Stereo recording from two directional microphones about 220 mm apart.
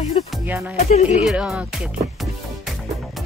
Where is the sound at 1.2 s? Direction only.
5° right (ahead or behind).